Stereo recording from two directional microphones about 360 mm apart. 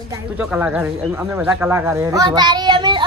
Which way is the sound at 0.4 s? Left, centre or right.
Centre.